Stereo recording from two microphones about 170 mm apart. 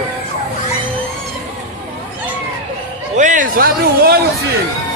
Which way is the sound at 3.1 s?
50° right (ahead or behind).